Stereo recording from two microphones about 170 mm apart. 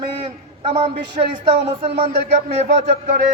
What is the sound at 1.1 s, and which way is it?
Speech, 30° right (ahead or behind).